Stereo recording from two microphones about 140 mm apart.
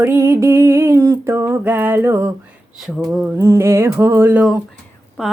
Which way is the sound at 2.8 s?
Centre (ahead or behind).